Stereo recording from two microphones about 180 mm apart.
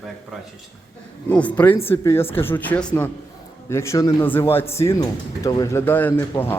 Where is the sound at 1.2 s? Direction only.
10° left (ahead or behind).